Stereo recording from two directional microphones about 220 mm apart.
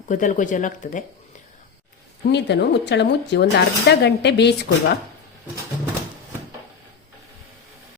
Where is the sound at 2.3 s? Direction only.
50° left (ahead or behind).